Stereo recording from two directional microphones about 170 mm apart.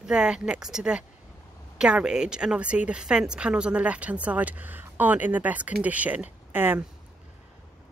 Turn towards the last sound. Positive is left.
turn(degrees=-10)  # may be behind; listen again after turning